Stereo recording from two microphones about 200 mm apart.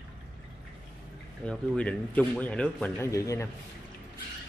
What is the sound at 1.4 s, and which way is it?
Speech, 5° left (ahead or behind).